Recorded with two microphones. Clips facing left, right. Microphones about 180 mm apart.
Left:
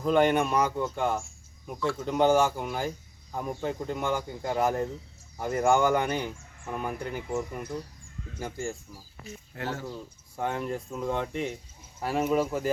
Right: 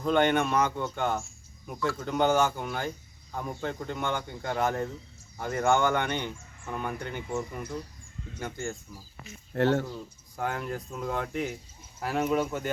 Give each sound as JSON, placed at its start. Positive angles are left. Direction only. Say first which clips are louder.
{"t": 0.0, "sound": "speech", "louder": "left 1 dB", "side_deg": 5}
{"t": 9.6, "sound": "speech", "louder": "right 10 dB", "side_deg": -70}
{"t": 10.3, "sound": "speech", "louder": "left 2 dB", "side_deg": 0}